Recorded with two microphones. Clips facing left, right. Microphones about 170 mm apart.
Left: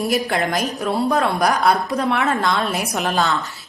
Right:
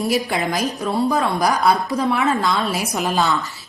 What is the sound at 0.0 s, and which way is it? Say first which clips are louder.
A woman's voice: even; centre (ahead or behind).